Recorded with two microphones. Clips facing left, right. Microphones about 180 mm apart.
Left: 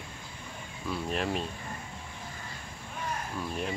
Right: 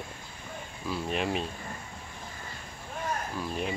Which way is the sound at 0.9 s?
Centre (ahead or behind).